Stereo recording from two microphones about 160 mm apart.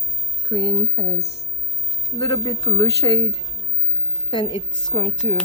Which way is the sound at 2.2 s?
30° left (ahead or behind).